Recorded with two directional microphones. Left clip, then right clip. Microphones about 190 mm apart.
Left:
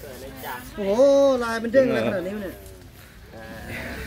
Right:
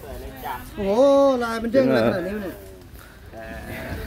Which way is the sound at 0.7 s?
40° right (ahead or behind).